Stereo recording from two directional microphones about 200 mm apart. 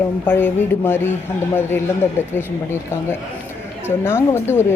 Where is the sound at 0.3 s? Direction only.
10° left (ahead or behind).